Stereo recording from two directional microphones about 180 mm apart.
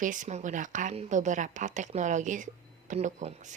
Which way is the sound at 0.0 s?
45° right (ahead or behind).